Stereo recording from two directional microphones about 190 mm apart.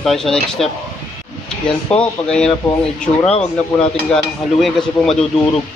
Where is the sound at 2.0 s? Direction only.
5° left (ahead or behind).